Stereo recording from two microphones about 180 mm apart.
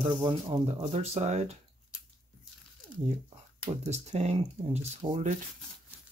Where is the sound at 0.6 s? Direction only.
40° right (ahead or behind).